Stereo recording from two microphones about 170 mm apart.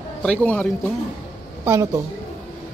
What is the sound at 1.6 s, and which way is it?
Speech, 15° right (ahead or behind).